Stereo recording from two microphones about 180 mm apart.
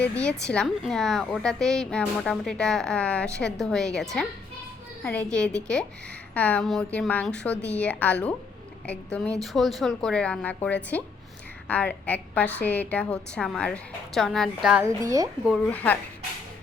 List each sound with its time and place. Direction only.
0.0 s a woman's voice: 5° left (ahead or behind)
14.8 s speech: 20° right (ahead or behind)
15.4 s a woman's voice: 5° left (ahead or behind)